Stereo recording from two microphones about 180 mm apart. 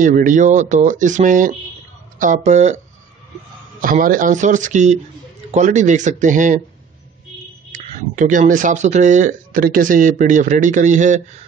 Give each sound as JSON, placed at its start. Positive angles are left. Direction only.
{"t": 0.0, "sound": "speech", "side_deg": -45}
{"t": 3.8, "sound": "speech", "side_deg": -50}
{"t": 7.7, "sound": "speech", "side_deg": -45}